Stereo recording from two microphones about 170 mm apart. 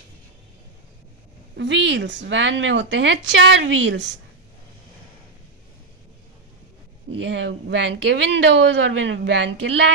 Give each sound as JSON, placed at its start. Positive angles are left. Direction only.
{"t": 1.6, "sound": "speech", "side_deg": -90}
{"t": 7.2, "sound": "speech", "side_deg": -90}